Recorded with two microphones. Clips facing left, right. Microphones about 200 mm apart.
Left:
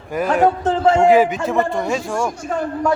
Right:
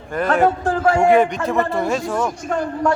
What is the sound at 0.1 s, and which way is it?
Speech, 5° left (ahead or behind).